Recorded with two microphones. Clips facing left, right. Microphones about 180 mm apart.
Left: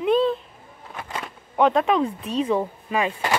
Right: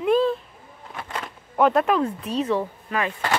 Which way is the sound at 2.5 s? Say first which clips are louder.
Left 1 dB; 15° left (ahead or behind).